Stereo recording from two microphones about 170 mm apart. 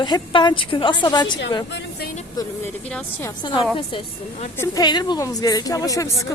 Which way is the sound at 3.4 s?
25° left (ahead or behind).